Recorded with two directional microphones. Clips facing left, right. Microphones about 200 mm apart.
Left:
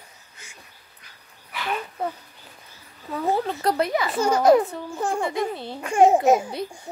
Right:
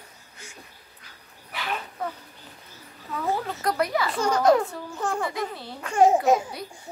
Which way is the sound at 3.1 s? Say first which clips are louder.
Left 4 dB; 35° left (ahead or behind).